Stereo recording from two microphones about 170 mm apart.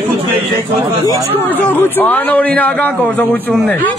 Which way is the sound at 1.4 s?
10° left (ahead or behind).